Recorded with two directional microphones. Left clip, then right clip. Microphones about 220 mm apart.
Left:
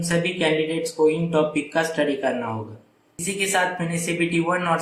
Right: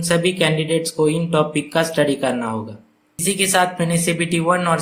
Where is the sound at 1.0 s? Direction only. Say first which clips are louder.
Left 1 dB; 50° right (ahead or behind).